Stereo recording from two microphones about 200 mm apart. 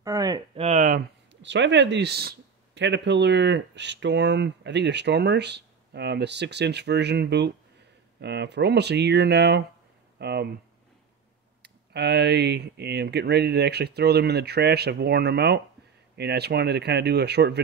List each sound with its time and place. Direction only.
0.0 s speech: 20° right (ahead or behind)
0.6 s a sound: 35° right (ahead or behind)
1.3 s speech: 65° right (ahead or behind)
11.6 s speech: 55° right (ahead or behind)